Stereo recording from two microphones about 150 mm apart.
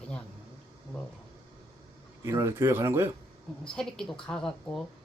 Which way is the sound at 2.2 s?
15° right (ahead or behind).